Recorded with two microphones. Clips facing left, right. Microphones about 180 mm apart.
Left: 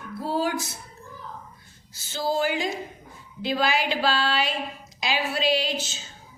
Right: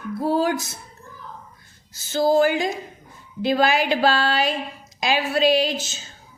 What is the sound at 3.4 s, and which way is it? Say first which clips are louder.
A woman's voice: right 5 dB; 45° right (ahead or behind).